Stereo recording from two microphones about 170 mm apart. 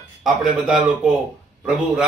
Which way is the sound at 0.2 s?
5° right (ahead or behind).